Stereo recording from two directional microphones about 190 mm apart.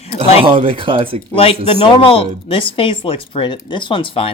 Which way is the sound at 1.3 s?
30° left (ahead or behind).